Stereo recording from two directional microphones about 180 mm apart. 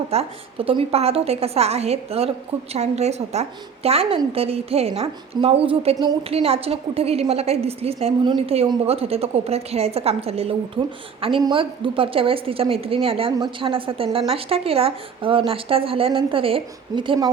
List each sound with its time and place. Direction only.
0.1 s a woman's voice: 35° right (ahead or behind)